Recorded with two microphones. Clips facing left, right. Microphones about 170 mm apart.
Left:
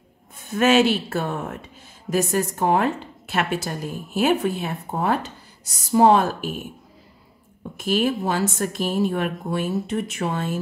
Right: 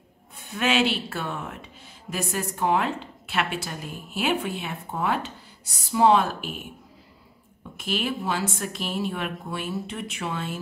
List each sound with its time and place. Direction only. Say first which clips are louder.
0.5 s a woman's voice: left 6 dB; 45° left (ahead or behind)
7.7 s a woman's voice: left 7 dB; 45° left (ahead or behind)